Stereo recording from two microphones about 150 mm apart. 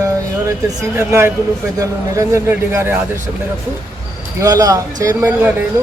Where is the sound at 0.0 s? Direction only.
20° right (ahead or behind).